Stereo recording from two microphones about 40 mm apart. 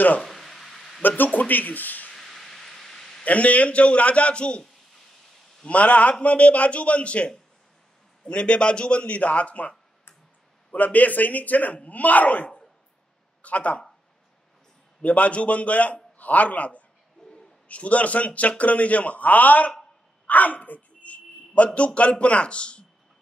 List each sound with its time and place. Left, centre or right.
0.3 s a sound: centre
1.0 s speech: left
2.1 s a sound: centre
3.3 s a man's voice: left
5.7 s a man's voice: left
8.3 s a man's voice: left
15.0 s a man's voice: left
17.2 s owl: centre
17.6 s a man's voice: left
20.2 s a sound: left
21.7 s a man's voice: left